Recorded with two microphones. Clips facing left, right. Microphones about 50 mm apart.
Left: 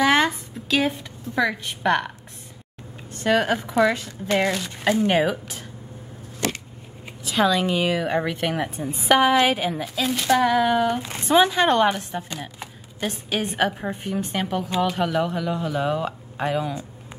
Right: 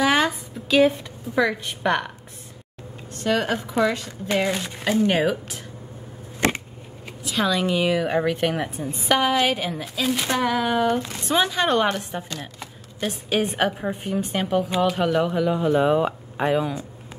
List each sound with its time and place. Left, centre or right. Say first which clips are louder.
0.0 s a woman's voice: left 1 dB; centre
4.5 s speech: even; centre
4.8 s speech: even; centre
6.4 s a sound: right 4 dB; right
7.2 s speech: left 2 dB; centre